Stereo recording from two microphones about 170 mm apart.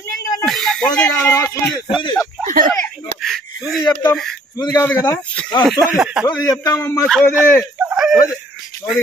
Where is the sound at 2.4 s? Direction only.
55° right (ahead or behind).